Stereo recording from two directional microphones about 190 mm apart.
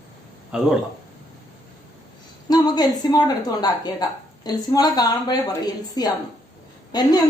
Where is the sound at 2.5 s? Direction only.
20° left (ahead or behind).